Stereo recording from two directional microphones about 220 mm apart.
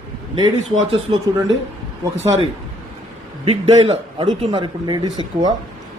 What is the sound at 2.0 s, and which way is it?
Speech, 10° right (ahead or behind).